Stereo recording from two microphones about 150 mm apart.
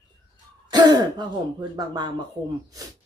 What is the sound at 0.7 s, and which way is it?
Speech, 30° right (ahead or behind).